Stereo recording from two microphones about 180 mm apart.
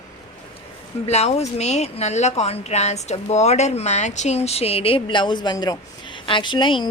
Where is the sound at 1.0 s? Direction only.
35° left (ahead or behind).